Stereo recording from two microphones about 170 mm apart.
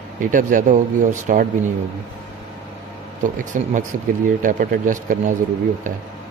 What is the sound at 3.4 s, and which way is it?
Speech, 50° right (ahead or behind).